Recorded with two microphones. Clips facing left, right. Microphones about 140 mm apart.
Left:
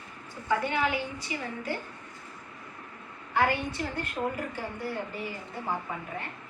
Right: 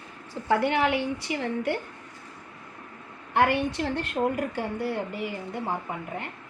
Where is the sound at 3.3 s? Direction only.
65° right (ahead or behind).